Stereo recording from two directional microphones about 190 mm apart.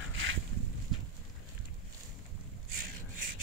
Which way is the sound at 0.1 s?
90° right.